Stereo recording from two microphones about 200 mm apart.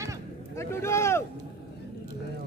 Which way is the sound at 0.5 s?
15° left (ahead or behind).